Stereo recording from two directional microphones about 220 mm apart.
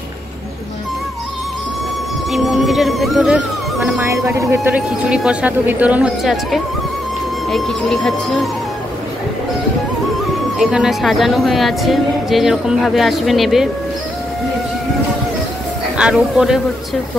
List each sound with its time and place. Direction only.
2.3 s speech: centre (ahead or behind)
4.0 s speech: 15° right (ahead or behind)
10.6 s speech: centre (ahead or behind)
16.0 s speech: 5° right (ahead or behind)